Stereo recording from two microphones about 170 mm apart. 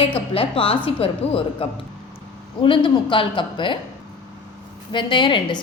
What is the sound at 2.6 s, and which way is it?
A woman's voice, 30° left (ahead or behind).